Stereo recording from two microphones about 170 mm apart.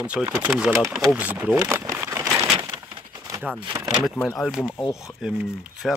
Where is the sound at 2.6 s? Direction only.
20° right (ahead or behind).